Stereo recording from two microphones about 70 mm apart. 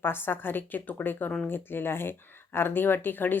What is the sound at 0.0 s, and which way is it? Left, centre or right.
Speech, left.